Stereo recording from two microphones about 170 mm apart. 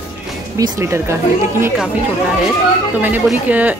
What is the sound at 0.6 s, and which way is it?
Speech, 15° right (ahead or behind).